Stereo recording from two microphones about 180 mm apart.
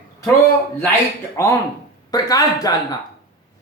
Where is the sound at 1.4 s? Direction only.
15° left (ahead or behind).